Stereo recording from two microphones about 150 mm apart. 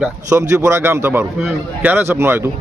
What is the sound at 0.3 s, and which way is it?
Speech, 20° right (ahead or behind).